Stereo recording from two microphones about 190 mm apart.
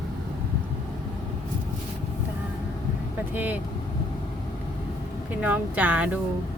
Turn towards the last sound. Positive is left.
turn(degrees=-5)  # may be behind; listen again after turning